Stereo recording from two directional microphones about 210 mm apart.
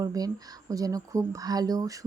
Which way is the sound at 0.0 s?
15° right (ahead or behind).